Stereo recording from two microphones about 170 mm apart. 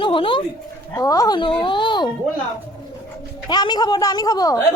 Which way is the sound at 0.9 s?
20° left (ahead or behind).